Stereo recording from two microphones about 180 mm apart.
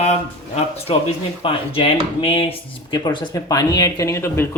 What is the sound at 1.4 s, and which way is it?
Speech, 30° left (ahead or behind).